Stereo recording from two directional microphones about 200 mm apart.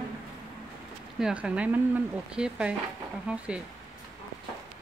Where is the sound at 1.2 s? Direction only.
5° right (ahead or behind).